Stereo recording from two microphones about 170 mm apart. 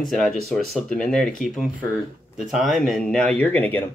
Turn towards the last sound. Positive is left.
turn(degrees=10)  # may be behind; listen again after turning